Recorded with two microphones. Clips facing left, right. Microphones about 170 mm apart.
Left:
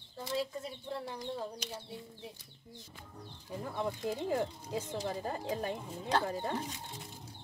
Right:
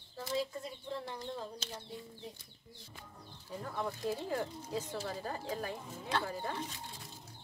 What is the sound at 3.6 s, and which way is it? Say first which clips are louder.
A woman's voice: left 2 dB; 15° left (ahead or behind).